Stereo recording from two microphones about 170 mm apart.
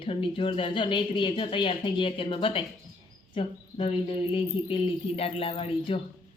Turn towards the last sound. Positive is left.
turn(degrees=30)  # may be behind; listen again after turning